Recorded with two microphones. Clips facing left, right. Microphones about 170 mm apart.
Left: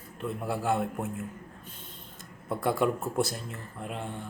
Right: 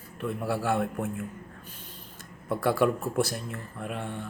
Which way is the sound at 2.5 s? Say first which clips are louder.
Right 2 dB; 20° left (ahead or behind).